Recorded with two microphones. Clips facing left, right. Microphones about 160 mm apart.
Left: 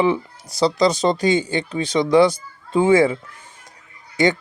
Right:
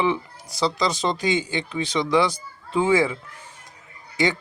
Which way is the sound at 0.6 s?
40° left (ahead or behind).